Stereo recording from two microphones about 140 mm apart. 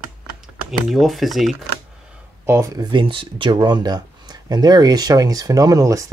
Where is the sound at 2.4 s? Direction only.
20° right (ahead or behind).